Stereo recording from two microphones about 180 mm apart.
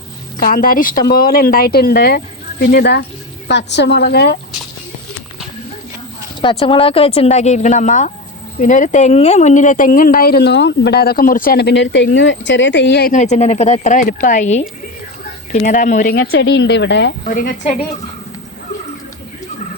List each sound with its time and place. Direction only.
0.3 s a woman's voice: 50° left (ahead or behind)
6.4 s speech: 30° left (ahead or behind); by 13.1 s 65° left (ahead or behind)
13.1 s speech: 40° left (ahead or behind)
16.4 s speech: 80° left